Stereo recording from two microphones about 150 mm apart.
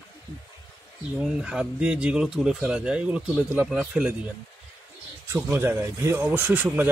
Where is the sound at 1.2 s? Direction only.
5° right (ahead or behind).